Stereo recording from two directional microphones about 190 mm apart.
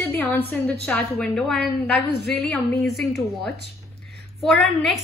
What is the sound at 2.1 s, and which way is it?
Speech, 60° left (ahead or behind).